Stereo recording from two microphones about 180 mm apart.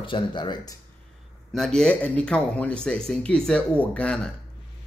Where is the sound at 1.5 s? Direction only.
Centre (ahead or behind).